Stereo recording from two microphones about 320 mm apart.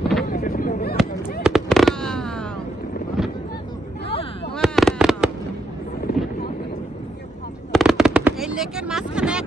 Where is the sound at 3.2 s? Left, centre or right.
Centre.